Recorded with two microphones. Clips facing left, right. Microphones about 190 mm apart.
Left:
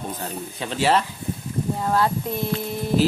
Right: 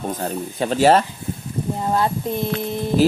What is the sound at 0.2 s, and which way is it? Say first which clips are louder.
Speech: right 7 dB; 45° right (ahead or behind).